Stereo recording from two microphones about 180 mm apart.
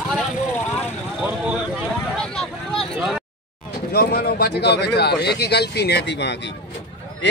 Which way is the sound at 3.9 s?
60° left (ahead or behind).